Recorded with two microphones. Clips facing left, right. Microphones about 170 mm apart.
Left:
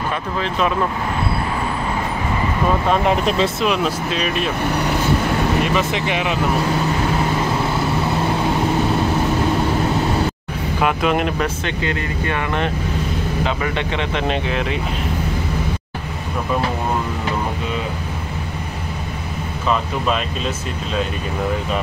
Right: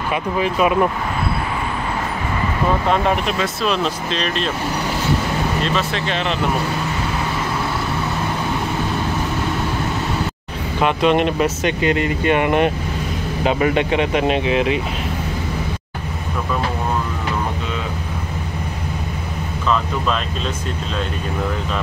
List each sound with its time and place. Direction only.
0.4 s speech: 10° right (ahead or behind)
3.6 s speech: 10° left (ahead or behind)
5.6 s speech: 15° left (ahead or behind)
10.8 s speech: 5° left (ahead or behind)
11.3 s speech: 10° right (ahead or behind)
11.8 s speech: 20° right (ahead or behind)
13.7 s speech: 15° right (ahead or behind)
14.2 s speech: 5° right (ahead or behind)